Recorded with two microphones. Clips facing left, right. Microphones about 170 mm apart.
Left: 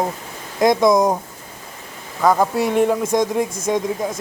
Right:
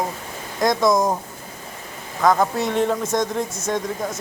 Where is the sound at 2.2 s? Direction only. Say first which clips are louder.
Left 2 dB; 10° left (ahead or behind).